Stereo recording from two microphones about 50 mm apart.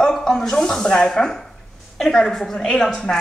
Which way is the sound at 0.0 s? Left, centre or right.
Centre.